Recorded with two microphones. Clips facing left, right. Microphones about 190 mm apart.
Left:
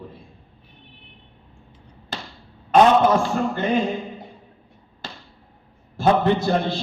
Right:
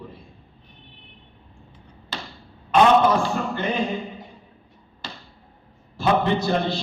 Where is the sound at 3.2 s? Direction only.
50° left (ahead or behind).